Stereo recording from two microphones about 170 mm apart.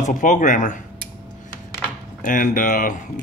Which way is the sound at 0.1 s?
50° left (ahead or behind).